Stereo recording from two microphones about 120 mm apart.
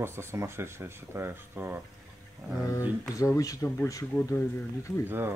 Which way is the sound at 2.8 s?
30° left (ahead or behind).